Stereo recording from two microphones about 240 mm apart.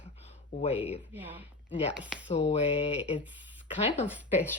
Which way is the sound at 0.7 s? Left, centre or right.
Centre.